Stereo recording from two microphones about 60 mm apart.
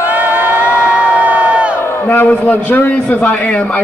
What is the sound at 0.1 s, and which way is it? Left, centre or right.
Crowd, right.